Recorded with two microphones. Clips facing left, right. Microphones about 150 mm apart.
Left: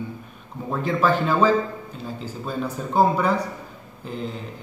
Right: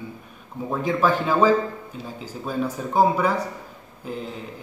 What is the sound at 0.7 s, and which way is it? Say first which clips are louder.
Speech: even; 10° right (ahead or behind).